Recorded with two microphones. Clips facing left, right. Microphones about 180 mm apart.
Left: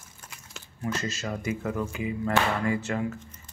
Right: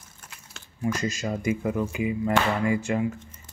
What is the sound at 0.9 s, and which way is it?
Speech, 15° right (ahead or behind).